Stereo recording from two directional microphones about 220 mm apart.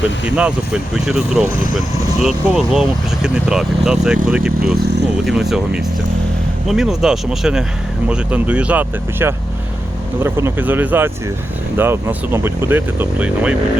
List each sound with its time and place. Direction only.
0.3 s speech: 5° right (ahead or behind)
4.6 s speech: 50° right (ahead or behind)
5.2 s speech: centre (ahead or behind)